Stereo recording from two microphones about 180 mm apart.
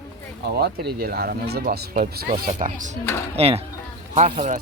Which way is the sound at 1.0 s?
55° right (ahead or behind).